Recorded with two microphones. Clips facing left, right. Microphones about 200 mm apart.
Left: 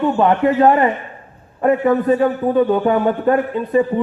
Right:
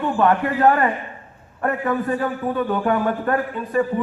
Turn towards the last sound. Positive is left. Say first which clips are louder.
# left 5 dB
turn(degrees=20)  # may be behind; listen again after turning